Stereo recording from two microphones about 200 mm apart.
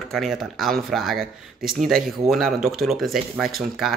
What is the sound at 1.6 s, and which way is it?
Speech, 45° right (ahead or behind).